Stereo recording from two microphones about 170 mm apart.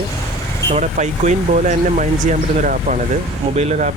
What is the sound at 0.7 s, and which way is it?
Speech, 45° right (ahead or behind).